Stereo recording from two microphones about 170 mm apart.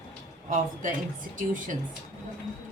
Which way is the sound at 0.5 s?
50° right (ahead or behind).